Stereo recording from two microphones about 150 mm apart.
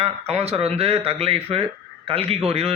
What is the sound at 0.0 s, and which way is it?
Speech, 45° right (ahead or behind).